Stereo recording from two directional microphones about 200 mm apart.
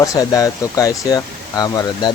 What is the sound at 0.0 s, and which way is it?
Speech, 15° left (ahead or behind).